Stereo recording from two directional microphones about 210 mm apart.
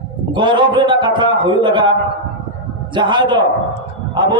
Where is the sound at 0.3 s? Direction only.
20° right (ahead or behind).